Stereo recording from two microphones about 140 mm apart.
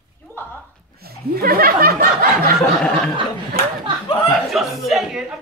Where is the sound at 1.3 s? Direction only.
90° right.